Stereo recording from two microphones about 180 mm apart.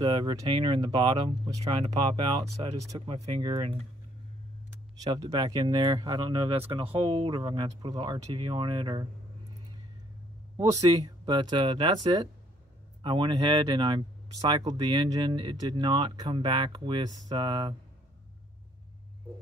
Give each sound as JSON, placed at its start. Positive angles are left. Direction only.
{"t": 0.0, "sound": "speech", "side_deg": -25}
{"t": 5.1, "sound": "speech", "side_deg": -25}
{"t": 10.6, "sound": "speech", "side_deg": -20}